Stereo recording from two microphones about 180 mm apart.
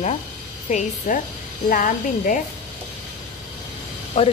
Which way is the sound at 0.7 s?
45° left (ahead or behind).